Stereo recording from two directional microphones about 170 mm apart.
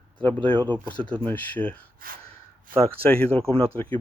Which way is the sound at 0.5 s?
25° right (ahead or behind).